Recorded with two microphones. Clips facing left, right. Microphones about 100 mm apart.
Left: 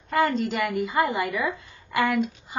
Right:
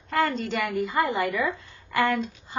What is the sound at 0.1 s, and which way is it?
A woman's voice, 5° left (ahead or behind).